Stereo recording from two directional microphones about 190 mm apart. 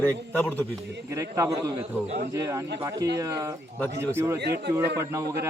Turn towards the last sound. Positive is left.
turn(degrees=-15)  # may be behind; listen again after turning